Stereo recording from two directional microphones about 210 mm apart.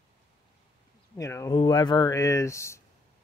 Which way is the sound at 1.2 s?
15° left (ahead or behind).